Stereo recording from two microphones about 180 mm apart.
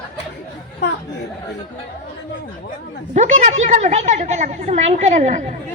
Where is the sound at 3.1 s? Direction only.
40° right (ahead or behind).